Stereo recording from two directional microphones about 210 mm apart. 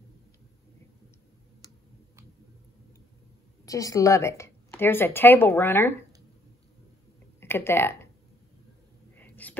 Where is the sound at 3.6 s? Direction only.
15° left (ahead or behind).